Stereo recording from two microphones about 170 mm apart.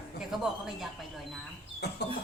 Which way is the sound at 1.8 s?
75° left (ahead or behind).